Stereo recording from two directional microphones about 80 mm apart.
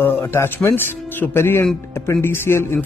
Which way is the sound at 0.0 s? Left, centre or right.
Left.